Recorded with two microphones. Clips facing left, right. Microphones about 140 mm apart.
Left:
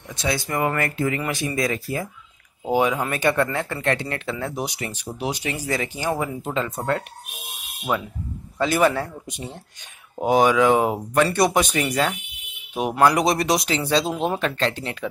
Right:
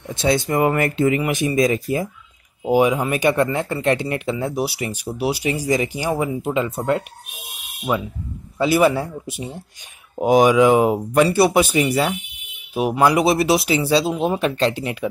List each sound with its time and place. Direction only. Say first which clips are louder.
0.1 s speech: right 6 dB; 25° right (ahead or behind)
8.5 s speech: right 3 dB; 10° right (ahead or behind)
14.4 s speech: right 4 dB; 15° right (ahead or behind)